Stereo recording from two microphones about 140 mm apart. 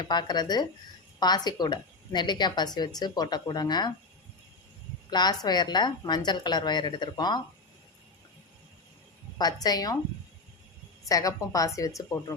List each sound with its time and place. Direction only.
0.0 s a woman's voice: 30° left (ahead or behind)
5.1 s a woman's voice: 30° left (ahead or behind)
9.4 s a woman's voice: 30° left (ahead or behind)
11.1 s a woman's voice: 25° left (ahead or behind)